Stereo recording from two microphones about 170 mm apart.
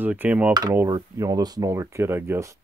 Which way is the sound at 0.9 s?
20° right (ahead or behind).